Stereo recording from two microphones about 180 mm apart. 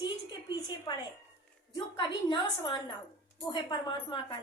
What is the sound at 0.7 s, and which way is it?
A child's voice, 20° left (ahead or behind).